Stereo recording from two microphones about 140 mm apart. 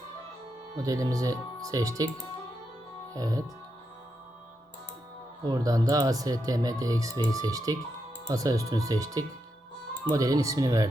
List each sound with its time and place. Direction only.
0.8 s speech: 25° right (ahead or behind)
3.1 s speech: 25° right (ahead or behind)
5.5 s speech: 25° right (ahead or behind)